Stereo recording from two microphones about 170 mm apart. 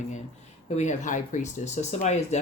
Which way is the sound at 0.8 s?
45° left (ahead or behind).